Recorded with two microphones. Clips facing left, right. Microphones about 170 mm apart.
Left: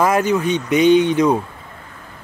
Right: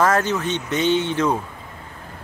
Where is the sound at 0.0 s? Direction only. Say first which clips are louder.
Left 3 dB; 10° left (ahead or behind).